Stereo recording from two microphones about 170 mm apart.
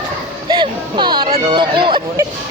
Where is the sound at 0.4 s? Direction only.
25° right (ahead or behind).